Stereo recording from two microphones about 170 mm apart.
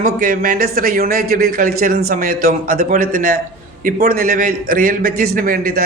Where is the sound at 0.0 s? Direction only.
50° right (ahead or behind).